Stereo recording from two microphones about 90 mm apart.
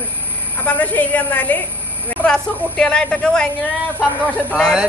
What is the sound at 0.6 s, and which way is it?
A woman's voice, 15° left (ahead or behind).